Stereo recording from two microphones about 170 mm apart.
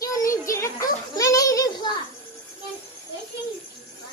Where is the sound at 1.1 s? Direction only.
20° left (ahead or behind).